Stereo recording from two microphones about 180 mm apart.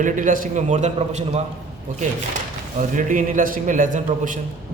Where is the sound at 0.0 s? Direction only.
45° right (ahead or behind).